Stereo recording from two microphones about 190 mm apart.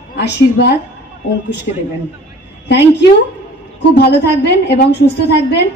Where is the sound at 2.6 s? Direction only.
65° left (ahead or behind).